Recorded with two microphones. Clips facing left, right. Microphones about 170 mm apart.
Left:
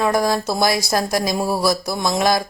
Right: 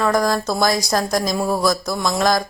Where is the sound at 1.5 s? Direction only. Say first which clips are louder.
Even; 10° left (ahead or behind).